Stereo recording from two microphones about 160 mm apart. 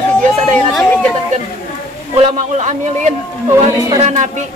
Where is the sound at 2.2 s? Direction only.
40° right (ahead or behind).